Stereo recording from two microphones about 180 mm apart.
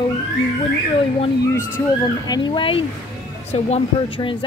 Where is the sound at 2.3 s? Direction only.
25° left (ahead or behind).